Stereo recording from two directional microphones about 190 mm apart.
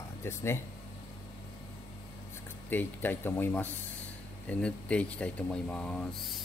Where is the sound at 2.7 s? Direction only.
10° left (ahead or behind).